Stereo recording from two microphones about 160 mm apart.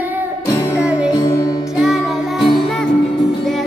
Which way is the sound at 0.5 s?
15° left (ahead or behind).